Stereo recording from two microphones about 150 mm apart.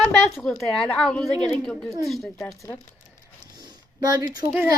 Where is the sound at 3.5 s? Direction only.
25° right (ahead or behind).